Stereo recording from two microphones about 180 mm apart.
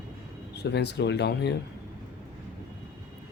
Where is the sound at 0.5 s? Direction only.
70° left (ahead or behind).